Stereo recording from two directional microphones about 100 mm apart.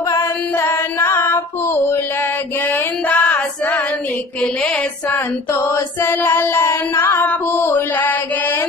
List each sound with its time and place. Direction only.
0.1 s female singing: 25° left (ahead or behind)
5.1 s mantra: 20° left (ahead or behind)